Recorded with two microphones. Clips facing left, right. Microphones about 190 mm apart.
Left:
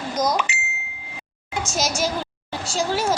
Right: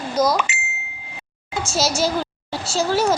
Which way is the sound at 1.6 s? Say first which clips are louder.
Right 3 dB; 15° left (ahead or behind).